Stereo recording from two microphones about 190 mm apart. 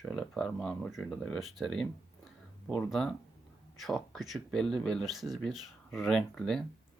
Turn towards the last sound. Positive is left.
turn(degrees=5)  # may be behind; listen again after turning